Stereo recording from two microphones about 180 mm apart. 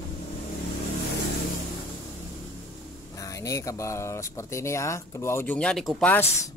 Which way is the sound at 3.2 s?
20° left (ahead or behind).